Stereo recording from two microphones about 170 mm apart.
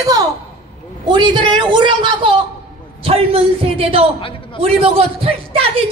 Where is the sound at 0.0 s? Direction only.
20° right (ahead or behind).